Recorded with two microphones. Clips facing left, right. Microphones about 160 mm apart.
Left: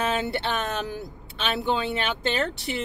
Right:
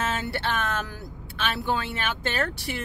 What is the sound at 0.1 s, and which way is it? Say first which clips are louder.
Speech: left 2 dB; 20° left (ahead or behind).